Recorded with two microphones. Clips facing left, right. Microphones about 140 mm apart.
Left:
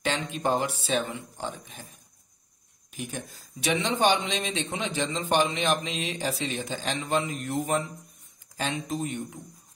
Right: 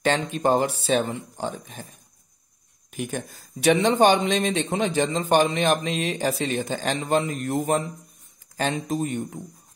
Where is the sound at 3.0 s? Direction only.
55° right (ahead or behind).